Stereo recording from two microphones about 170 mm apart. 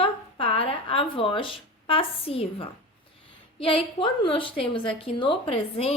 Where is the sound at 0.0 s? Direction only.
30° left (ahead or behind).